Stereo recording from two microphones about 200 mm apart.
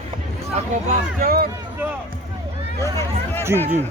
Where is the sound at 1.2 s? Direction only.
50° right (ahead or behind).